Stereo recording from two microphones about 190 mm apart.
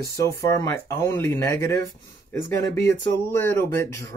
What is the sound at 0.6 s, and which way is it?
Speech, 15° left (ahead or behind).